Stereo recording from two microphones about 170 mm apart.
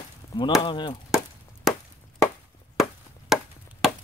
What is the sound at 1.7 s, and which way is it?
Chop, centre (ahead or behind).